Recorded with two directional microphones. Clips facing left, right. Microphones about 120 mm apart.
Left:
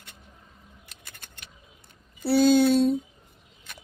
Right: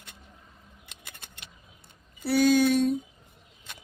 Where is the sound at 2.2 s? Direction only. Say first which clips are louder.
Left 2 dB; 30° left (ahead or behind).